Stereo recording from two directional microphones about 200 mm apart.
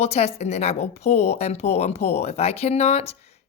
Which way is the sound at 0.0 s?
30° left (ahead or behind).